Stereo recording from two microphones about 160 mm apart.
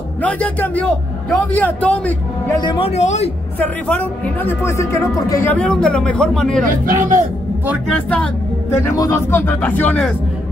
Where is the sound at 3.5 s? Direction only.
10° left (ahead or behind).